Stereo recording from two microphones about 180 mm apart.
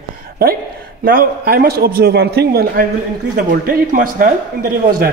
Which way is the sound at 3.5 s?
50° right (ahead or behind).